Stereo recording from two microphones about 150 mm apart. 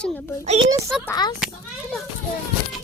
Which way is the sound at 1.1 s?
25° left (ahead or behind).